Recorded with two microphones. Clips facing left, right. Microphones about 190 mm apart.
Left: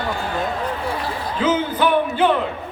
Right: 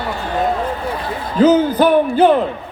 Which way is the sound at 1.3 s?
40° right (ahead or behind).